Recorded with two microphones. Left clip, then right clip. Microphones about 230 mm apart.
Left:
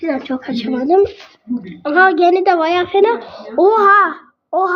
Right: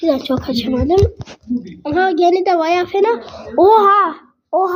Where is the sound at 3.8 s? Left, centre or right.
Centre.